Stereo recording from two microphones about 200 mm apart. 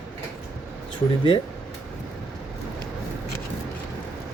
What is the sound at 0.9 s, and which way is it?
Speech, 25° left (ahead or behind).